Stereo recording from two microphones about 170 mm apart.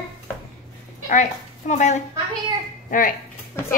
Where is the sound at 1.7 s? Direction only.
45° left (ahead or behind).